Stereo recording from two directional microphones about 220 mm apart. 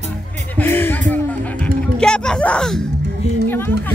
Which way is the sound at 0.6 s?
10° left (ahead or behind).